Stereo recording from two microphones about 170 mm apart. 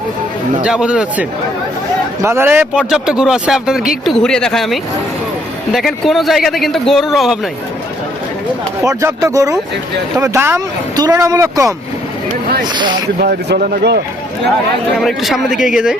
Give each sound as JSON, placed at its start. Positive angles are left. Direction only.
{"t": 0.6, "sound": "speech", "side_deg": -5}
{"t": 8.8, "sound": "speech", "side_deg": -20}
{"t": 12.3, "sound": "speech", "side_deg": -60}
{"t": 12.6, "sound": "speech", "side_deg": -25}
{"t": 13.1, "sound": "speech", "side_deg": -65}
{"t": 14.9, "sound": "speech", "side_deg": 0}